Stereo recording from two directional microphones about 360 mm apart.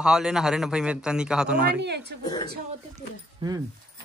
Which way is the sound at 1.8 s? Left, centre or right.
Right.